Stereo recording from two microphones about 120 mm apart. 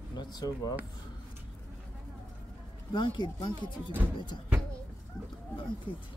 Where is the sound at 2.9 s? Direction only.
40° left (ahead or behind).